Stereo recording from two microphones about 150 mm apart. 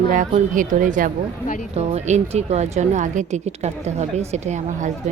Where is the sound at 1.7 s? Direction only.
45° right (ahead or behind).